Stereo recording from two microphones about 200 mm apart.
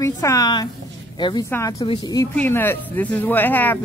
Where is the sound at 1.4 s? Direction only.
10° left (ahead or behind).